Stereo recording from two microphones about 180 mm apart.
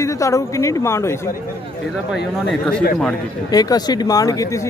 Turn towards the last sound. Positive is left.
turn(degrees=20)  # may be behind; listen again after turning